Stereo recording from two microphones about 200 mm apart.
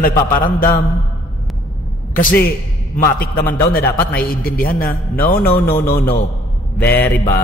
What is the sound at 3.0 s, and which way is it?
A man's voice, 45° left (ahead or behind).